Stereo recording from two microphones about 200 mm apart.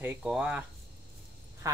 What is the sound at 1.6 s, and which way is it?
Speech, 15° right (ahead or behind).